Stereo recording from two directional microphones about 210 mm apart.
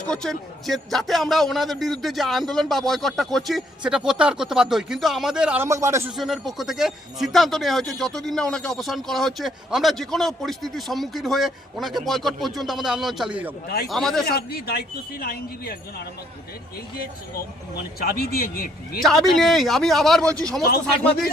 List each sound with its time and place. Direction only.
0.1 s speech: centre (ahead or behind)
5.6 s a man's voice: 15° right (ahead or behind)
6.1 s speech: centre (ahead or behind)
14.3 s speech: 45° left (ahead or behind)
17.0 s speech: 45° left (ahead or behind)
19.0 s speech: centre (ahead or behind)